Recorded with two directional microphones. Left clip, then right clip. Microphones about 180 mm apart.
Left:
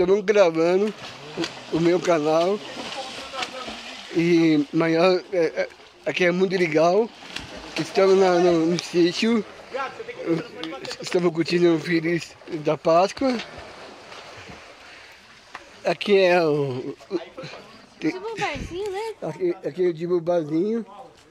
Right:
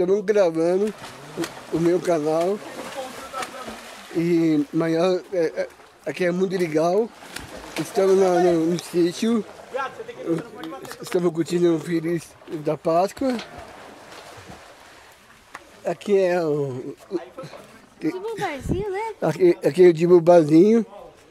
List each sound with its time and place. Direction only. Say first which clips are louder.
0.0 s speech: left 1 dB; centre (ahead or behind)
4.2 s speech: left 1 dB; 10° left (ahead or behind)
11.0 s speech: even; 10° right (ahead or behind)
15.8 s speech: left 2 dB; 10° left (ahead or behind)
18.1 s speech: even; 20° right (ahead or behind)
18.9 s speech: right 6 dB; 65° right (ahead or behind)